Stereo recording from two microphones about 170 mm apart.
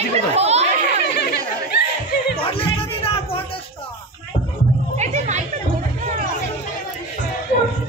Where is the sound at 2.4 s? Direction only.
35° left (ahead or behind).